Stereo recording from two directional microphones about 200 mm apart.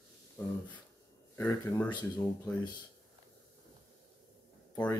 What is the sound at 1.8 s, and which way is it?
Speech, 20° left (ahead or behind).